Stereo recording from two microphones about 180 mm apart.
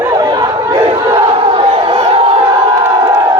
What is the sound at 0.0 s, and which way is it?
Chatter, 20° right (ahead or behind).